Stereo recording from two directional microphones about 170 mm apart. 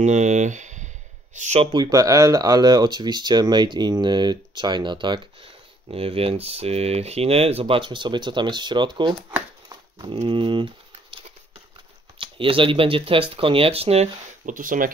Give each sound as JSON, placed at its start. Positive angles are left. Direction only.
{"t": 0.0, "sound": "speech", "side_deg": -45}
{"t": 1.7, "sound": "speech", "side_deg": -25}
{"t": 9.3, "sound": "chopping", "side_deg": -20}
{"t": 10.1, "sound": "speech", "side_deg": -30}
{"t": 12.2, "sound": "speech", "side_deg": -30}